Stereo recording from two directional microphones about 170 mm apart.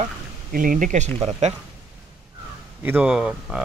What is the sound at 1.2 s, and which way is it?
Speech, 40° right (ahead or behind).